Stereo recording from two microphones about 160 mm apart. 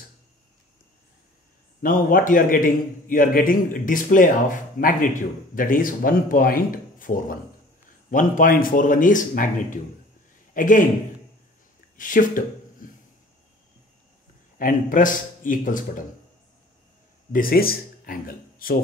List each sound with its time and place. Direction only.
1.8 s a man's voice: 60° left (ahead or behind)
12.0 s a man's voice: 55° left (ahead or behind)
12.8 s a sound: 60° left (ahead or behind)
14.6 s a man's voice: 55° left (ahead or behind)
17.3 s speech: 65° left (ahead or behind)